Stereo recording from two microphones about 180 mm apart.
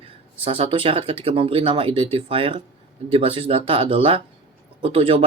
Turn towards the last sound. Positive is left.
turn(degrees=-30)  # may be behind; listen again after turning